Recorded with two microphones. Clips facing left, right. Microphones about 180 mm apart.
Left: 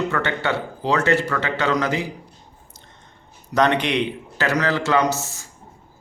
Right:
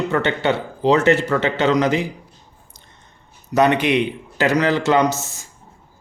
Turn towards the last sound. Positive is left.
turn(degrees=-20)  # may be behind; listen again after turning